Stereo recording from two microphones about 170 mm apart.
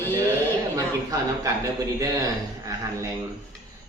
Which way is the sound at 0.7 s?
20° right (ahead or behind).